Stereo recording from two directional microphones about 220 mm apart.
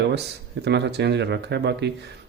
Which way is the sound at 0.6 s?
50° right (ahead or behind).